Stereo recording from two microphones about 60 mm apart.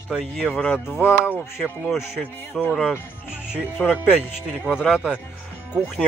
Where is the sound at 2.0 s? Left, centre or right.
Centre.